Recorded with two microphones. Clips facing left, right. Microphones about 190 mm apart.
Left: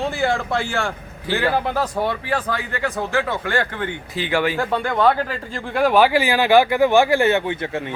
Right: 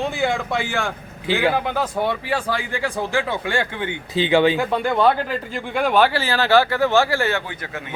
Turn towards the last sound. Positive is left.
turn(degrees=25)  # may be behind; listen again after turning